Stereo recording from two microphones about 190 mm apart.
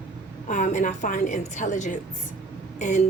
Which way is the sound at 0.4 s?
40° left (ahead or behind).